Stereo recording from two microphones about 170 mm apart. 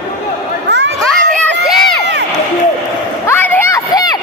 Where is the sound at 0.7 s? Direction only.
90° right.